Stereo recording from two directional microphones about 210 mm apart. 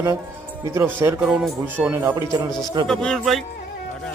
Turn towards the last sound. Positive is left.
turn(degrees=0)  # may be behind; listen again after turning